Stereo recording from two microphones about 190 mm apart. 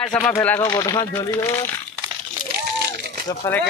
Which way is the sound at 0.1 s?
10° left (ahead or behind).